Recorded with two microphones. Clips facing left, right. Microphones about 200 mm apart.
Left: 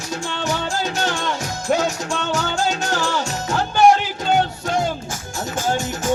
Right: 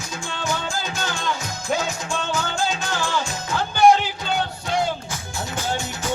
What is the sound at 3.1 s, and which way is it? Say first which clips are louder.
Music: left 3 dB; 40° left (ahead or behind).